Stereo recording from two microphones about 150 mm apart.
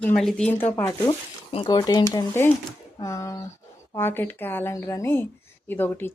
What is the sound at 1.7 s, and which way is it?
A woman's voice, 25° left (ahead or behind).